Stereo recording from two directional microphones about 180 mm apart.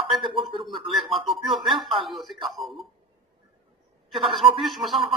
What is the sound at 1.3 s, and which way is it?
A man's voice, centre (ahead or behind).